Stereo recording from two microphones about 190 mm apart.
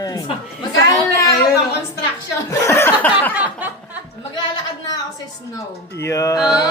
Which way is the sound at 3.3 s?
5° right (ahead or behind).